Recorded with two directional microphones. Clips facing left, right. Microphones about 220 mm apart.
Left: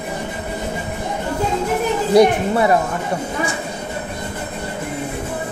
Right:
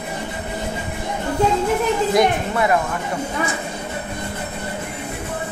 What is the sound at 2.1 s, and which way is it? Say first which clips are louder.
Speech: left 10 dB; 30° left (ahead or behind).